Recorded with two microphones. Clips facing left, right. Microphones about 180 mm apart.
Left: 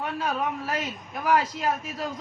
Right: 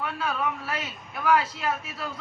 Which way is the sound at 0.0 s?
45° left (ahead or behind).